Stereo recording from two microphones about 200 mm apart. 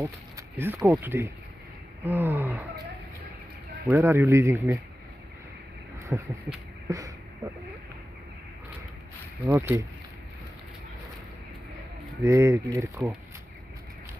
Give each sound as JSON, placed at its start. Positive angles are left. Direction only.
{"t": 0.0, "sound": "speech", "side_deg": -15}
{"t": 3.8, "sound": "speech", "side_deg": -10}
{"t": 6.1, "sound": "speech", "side_deg": -10}
{"t": 9.5, "sound": "speech", "side_deg": -15}
{"t": 12.2, "sound": "speech", "side_deg": -15}